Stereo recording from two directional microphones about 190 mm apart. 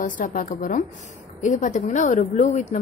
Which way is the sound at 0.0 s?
40° left (ahead or behind).